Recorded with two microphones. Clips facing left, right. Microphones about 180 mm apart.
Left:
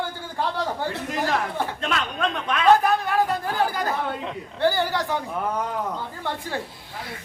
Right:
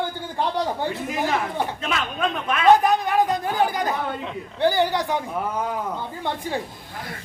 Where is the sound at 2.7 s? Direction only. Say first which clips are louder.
Right 2 dB; 15° right (ahead or behind).